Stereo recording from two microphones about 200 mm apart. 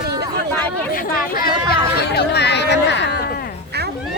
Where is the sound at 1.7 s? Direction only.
50° left (ahead or behind).